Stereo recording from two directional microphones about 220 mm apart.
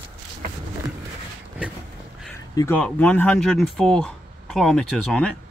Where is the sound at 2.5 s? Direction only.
15° left (ahead or behind).